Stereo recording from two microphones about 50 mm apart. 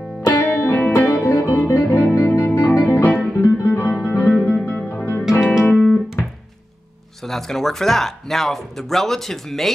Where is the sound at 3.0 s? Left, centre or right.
Left.